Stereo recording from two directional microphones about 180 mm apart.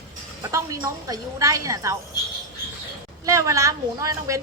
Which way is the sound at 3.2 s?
15° right (ahead or behind).